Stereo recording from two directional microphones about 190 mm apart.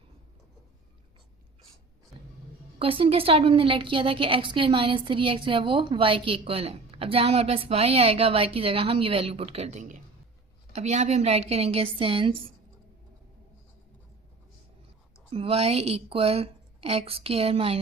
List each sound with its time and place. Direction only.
2.7 s a woman's voice: 30° right (ahead or behind)
15.3 s a woman's voice: 30° right (ahead or behind)